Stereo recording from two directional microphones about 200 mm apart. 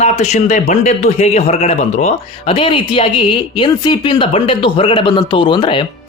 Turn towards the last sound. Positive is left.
turn(degrees=25)  # may be behind; listen again after turning